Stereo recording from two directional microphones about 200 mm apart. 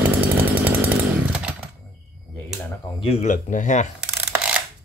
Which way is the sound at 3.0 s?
30° left (ahead or behind).